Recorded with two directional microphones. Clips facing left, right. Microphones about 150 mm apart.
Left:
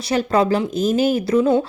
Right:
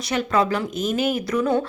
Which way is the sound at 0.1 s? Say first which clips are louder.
Left 4 dB; 35° left (ahead or behind).